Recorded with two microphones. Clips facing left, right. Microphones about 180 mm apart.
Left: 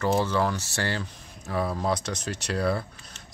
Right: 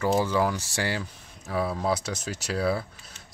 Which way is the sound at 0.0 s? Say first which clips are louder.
Right 1 dB; 10° right (ahead or behind).